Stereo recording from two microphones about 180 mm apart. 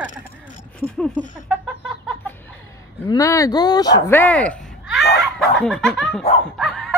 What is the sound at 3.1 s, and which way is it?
Speech, 15° left (ahead or behind).